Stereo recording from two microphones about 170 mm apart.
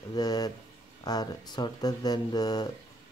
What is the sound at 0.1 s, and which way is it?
Speech, 20° left (ahead or behind).